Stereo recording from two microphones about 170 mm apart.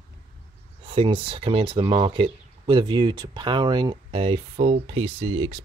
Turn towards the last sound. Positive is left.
turn(degrees=-30)  # may be behind; listen again after turning